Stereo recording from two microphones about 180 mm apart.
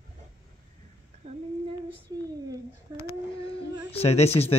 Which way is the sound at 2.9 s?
20° right (ahead or behind).